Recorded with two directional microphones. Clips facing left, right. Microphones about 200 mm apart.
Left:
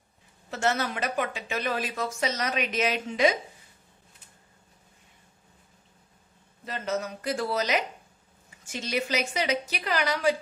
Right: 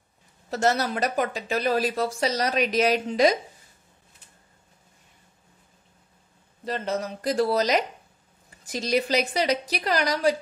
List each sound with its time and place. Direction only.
0.5 s speech: 40° right (ahead or behind)
6.6 s speech: 35° right (ahead or behind)